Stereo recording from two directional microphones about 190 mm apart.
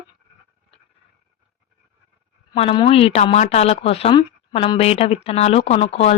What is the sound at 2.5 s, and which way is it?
A woman's voice, 25° left (ahead or behind).